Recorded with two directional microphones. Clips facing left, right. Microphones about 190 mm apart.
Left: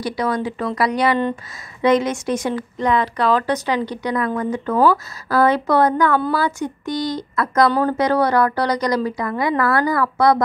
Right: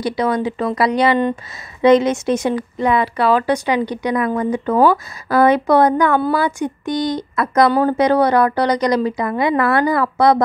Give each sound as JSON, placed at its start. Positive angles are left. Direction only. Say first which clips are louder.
{"t": 0.0, "sound": "speech", "louder": "right 3 dB", "side_deg": -20}
{"t": 2.8, "sound": "a woman's voice", "louder": "right 2 dB", "side_deg": -10}